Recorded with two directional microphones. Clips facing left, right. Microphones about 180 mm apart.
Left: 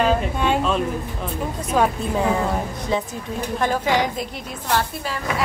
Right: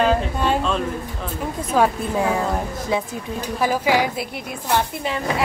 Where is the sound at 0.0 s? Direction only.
Centre (ahead or behind).